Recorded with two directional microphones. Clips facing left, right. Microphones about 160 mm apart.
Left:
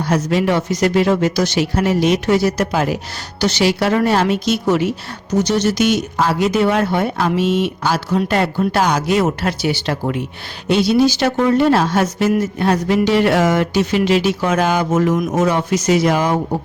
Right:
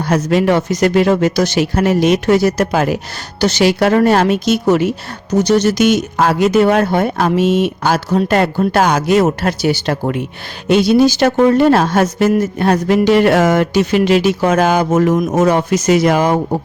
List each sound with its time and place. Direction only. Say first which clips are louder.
0.0 s speech: right 3 dB; 50° right (ahead or behind)